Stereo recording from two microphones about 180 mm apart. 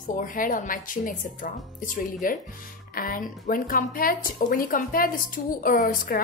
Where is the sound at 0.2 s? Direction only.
50° left (ahead or behind).